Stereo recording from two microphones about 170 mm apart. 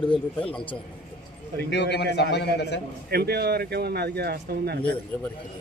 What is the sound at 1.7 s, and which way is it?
A man's voice, 90° left.